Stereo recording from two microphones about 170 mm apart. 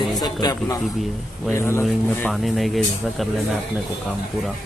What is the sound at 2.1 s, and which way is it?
Speech, 5° left (ahead or behind).